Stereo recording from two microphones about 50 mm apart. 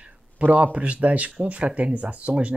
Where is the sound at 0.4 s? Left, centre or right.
Right.